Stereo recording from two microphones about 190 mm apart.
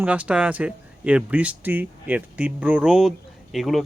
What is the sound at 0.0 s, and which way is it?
Speech, 5° right (ahead or behind).